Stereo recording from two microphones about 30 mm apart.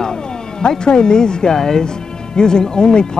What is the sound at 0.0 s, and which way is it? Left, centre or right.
Speech, left.